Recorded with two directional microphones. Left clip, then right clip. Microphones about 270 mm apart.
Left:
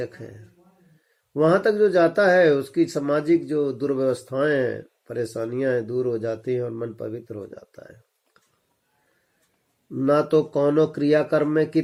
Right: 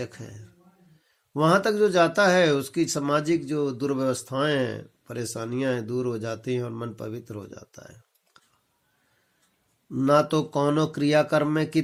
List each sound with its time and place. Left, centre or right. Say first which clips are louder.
1.3 s speech: left 3 dB; right
9.9 s speech: left 2 dB; right